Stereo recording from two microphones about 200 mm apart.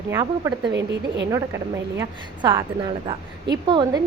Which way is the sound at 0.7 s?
60° right (ahead or behind).